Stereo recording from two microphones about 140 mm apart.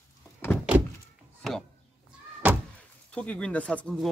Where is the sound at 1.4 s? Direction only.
5° left (ahead or behind).